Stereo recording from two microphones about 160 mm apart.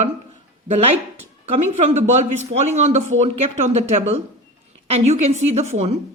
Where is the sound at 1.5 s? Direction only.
40° right (ahead or behind).